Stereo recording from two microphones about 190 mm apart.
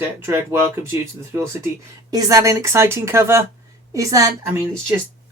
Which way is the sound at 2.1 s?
20° right (ahead or behind).